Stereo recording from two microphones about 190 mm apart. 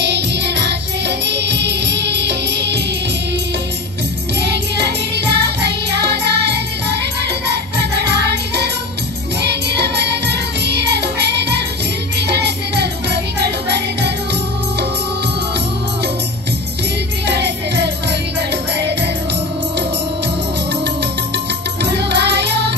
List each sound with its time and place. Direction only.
0.0 s music: 60° right (ahead or behind)
4.4 s music: 60° right (ahead or behind)
17.3 s music: 60° right (ahead or behind)
21.8 s music: 60° right (ahead or behind)